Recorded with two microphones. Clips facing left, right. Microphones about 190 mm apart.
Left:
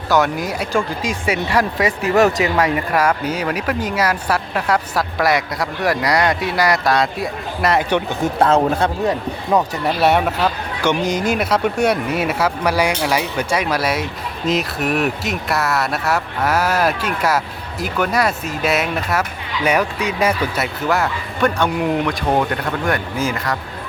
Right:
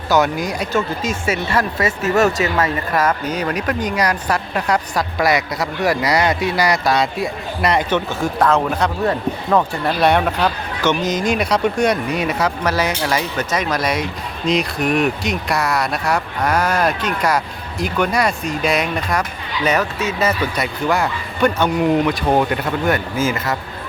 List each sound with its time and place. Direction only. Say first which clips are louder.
0.1 s speech: even; centre (ahead or behind)
7.9 s speech: left 1 dB; 15° left (ahead or behind)
8.4 s speech: left 2 dB; 30° left (ahead or behind)
9.0 s speech: right 1 dB; 15° left (ahead or behind); by 23.6 s 5° right (ahead or behind)